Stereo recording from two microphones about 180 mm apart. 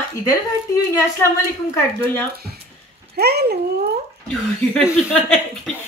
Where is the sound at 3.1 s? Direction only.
65° right (ahead or behind).